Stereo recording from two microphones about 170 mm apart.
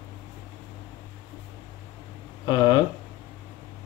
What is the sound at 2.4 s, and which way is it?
Speech, 25° left (ahead or behind).